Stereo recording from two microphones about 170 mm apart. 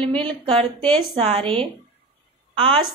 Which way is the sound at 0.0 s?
5° left (ahead or behind).